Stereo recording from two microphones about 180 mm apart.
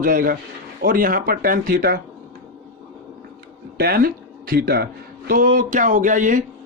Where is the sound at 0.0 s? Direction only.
50° right (ahead or behind).